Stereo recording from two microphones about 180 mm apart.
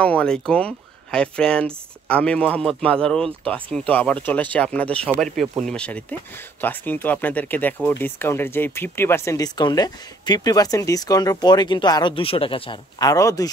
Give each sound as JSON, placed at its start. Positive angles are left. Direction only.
{"t": 0.0, "sound": "speech", "side_deg": 5}
{"t": 13.1, "sound": "speech", "side_deg": 20}